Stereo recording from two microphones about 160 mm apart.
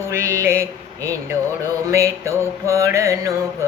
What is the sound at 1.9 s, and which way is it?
Music, 20° right (ahead or behind).